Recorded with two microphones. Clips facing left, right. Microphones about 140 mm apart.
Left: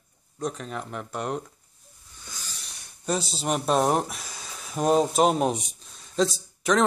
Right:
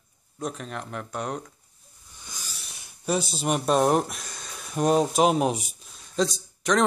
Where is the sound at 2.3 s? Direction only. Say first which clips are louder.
Even; 10° right (ahead or behind).